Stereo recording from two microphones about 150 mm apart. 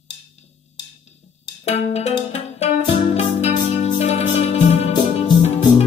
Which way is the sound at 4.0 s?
45° left (ahead or behind).